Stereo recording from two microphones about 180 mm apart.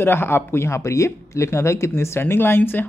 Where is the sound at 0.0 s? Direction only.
10° left (ahead or behind).